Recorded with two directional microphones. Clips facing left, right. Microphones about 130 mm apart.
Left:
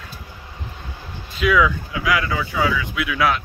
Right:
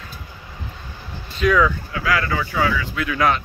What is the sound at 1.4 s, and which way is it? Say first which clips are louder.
Speech: even; 5° left (ahead or behind).